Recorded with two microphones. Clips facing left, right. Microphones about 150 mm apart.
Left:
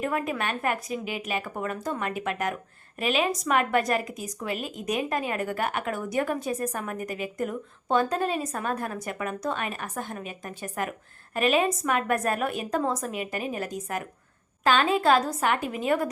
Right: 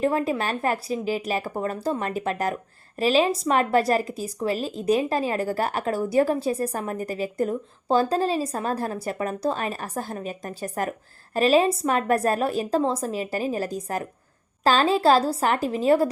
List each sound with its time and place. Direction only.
0.0 s speech: 30° right (ahead or behind)